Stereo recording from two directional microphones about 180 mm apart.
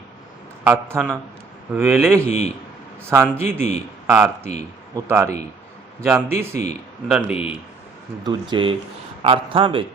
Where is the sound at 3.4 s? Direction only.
40° left (ahead or behind).